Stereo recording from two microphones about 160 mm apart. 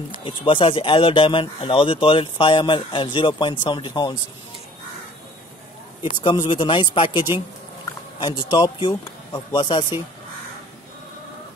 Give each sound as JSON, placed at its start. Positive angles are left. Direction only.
{"t": 0.2, "sound": "speech", "side_deg": 35}
{"t": 6.0, "sound": "speech", "side_deg": 30}